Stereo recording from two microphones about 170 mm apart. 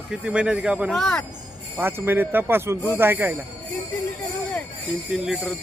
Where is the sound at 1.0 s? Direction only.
5° left (ahead or behind).